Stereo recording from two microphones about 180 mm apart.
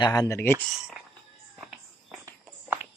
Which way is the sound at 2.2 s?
10° right (ahead or behind).